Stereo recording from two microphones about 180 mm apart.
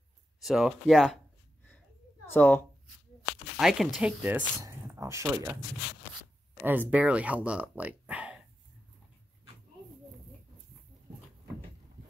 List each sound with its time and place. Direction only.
0.4 s speech: centre (ahead or behind)
2.3 s speech: 10° left (ahead or behind)
3.5 s speech: centre (ahead or behind)
6.6 s speech: 10° right (ahead or behind)